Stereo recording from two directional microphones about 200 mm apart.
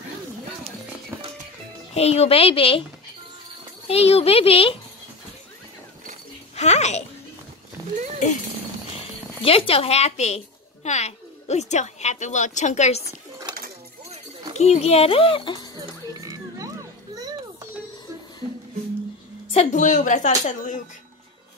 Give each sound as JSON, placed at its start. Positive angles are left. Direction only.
{"t": 2.0, "sound": "speech", "side_deg": 30}
{"t": 3.8, "sound": "speech", "side_deg": 30}
{"t": 6.5, "sound": "speech", "side_deg": 35}
{"t": 7.8, "sound": "a sound", "side_deg": -15}
{"t": 9.4, "sound": "a woman's voice", "side_deg": 30}
{"t": 14.5, "sound": "speech", "side_deg": 35}
{"t": 16.1, "sound": "children playing", "side_deg": -15}
{"t": 19.5, "sound": "a woman's voice", "side_deg": 35}